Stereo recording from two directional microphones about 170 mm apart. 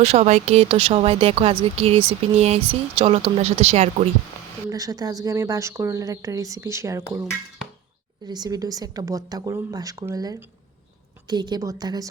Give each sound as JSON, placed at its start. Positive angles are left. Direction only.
{"t": 0.0, "sound": "speech", "side_deg": -40}
{"t": 4.7, "sound": "speech", "side_deg": -20}